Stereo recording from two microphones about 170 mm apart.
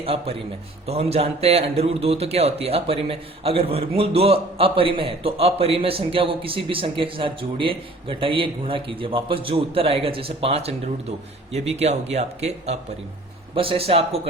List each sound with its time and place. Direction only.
0.0 s a man's voice: 35° right (ahead or behind)